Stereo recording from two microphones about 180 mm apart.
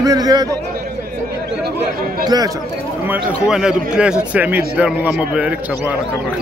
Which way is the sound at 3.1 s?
5° right (ahead or behind).